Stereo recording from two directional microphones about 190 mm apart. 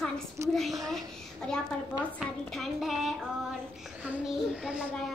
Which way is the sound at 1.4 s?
5° left (ahead or behind).